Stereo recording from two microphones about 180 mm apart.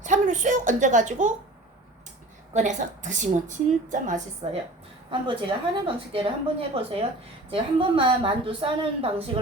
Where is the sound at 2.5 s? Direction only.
40° right (ahead or behind).